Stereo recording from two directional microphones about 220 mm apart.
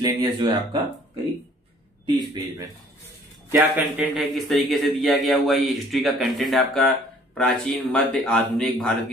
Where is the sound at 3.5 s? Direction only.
10° right (ahead or behind).